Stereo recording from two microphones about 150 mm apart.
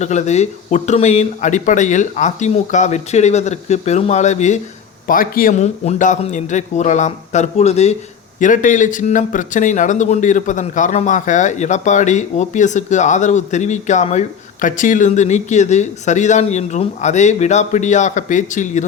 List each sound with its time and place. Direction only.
0.0 s speech: 50° left (ahead or behind)
5.0 s speech: 70° left (ahead or behind); by 7.9 s 45° left (ahead or behind)
8.4 s speech: 60° left (ahead or behind)